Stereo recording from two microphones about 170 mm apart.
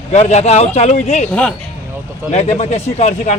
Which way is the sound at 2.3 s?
40° left (ahead or behind).